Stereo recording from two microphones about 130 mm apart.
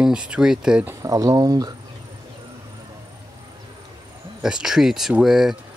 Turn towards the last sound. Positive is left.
turn(degrees=-5)  # may be behind; listen again after turning